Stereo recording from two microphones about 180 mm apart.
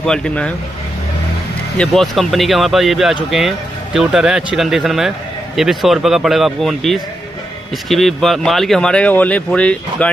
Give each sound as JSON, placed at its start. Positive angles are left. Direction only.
{"t": 0.0, "sound": "speech", "side_deg": 5}
{"t": 1.8, "sound": "speech", "side_deg": 0}